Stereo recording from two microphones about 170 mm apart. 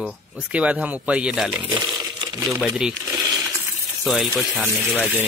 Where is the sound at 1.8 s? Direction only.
25° right (ahead or behind).